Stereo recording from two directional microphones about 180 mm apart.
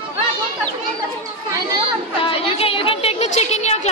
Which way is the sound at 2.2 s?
30° left (ahead or behind).